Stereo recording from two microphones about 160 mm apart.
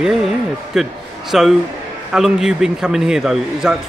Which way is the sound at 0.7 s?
Centre (ahead or behind).